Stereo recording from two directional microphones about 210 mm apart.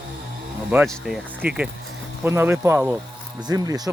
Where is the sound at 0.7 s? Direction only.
Centre (ahead or behind).